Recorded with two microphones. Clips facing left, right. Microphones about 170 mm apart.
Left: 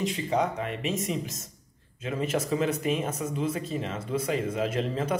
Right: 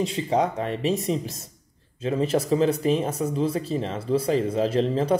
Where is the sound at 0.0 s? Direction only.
30° right (ahead or behind).